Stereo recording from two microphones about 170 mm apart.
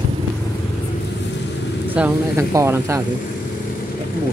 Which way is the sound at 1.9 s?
10° right (ahead or behind).